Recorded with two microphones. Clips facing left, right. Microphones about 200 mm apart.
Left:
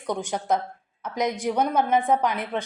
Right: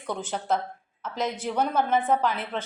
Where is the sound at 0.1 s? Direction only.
15° left (ahead or behind).